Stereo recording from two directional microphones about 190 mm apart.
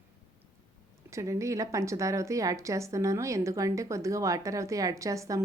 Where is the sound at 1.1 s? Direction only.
15° right (ahead or behind).